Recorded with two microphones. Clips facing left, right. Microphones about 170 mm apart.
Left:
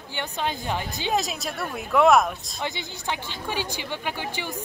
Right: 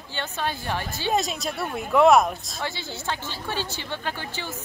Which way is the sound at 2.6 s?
20° left (ahead or behind).